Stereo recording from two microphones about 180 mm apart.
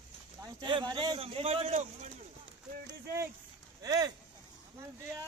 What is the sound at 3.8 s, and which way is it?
Speech, 20° right (ahead or behind).